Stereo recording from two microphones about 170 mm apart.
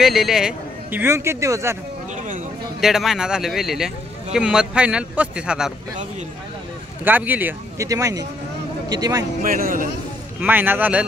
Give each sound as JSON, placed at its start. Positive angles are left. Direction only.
{"t": 0.0, "sound": "a man's voice", "side_deg": 0}
{"t": 2.8, "sound": "speech", "side_deg": 0}
{"t": 7.1, "sound": "a man's voice", "side_deg": -10}
{"t": 9.4, "sound": "speech", "side_deg": -55}
{"t": 10.4, "sound": "a man's voice", "side_deg": -10}